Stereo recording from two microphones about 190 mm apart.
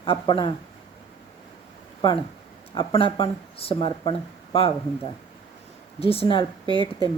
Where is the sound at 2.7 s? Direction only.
25° left (ahead or behind).